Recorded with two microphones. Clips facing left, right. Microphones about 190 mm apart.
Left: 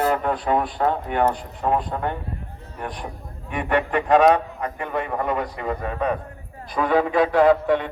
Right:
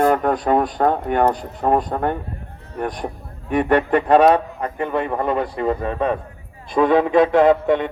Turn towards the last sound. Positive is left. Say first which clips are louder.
# right 2 dB
turn(degrees=-20)  # may be behind; listen again after turning